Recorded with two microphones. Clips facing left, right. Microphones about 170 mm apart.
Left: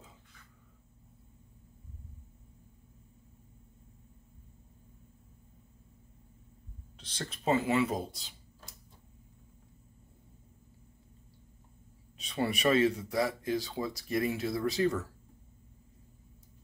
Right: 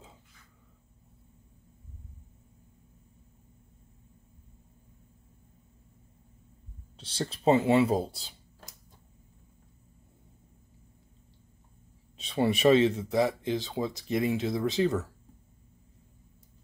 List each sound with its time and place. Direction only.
7.0 s speech: 30° right (ahead or behind)
12.2 s speech: 25° right (ahead or behind)